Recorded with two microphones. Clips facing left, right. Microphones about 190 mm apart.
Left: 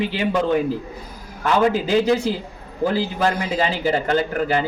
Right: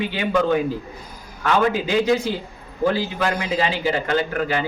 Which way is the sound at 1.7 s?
35° left (ahead or behind).